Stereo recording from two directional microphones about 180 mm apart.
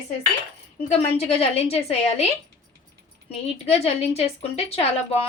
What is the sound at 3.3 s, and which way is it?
Speech, 35° left (ahead or behind).